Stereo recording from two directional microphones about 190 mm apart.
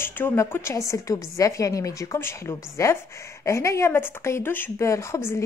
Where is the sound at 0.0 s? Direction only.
10° left (ahead or behind).